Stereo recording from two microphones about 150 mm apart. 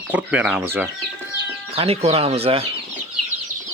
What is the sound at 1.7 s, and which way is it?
Speech, 40° right (ahead or behind).